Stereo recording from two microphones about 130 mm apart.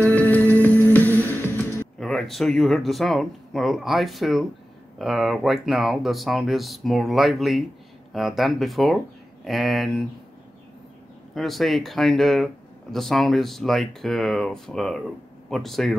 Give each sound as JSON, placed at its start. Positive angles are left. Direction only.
{"t": 0.0, "sound": "music", "side_deg": 10}
{"t": 2.0, "sound": "speech", "side_deg": 0}
{"t": 11.3, "sound": "speech", "side_deg": 0}